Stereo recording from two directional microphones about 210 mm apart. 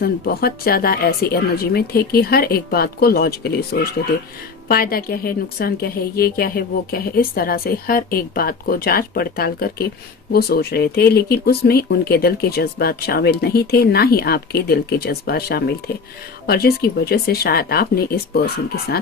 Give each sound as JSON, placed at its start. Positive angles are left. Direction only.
{"t": 0.0, "sound": "speech", "side_deg": 45}